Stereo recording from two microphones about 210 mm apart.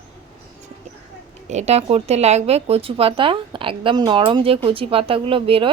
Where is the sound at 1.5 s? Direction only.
30° right (ahead or behind).